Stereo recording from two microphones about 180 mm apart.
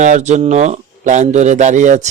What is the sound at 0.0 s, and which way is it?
A man's voice, 40° right (ahead or behind).